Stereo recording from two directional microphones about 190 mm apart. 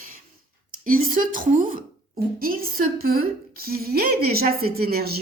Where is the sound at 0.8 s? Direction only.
45° right (ahead or behind).